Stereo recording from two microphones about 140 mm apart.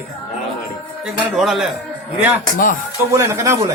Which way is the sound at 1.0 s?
5° right (ahead or behind).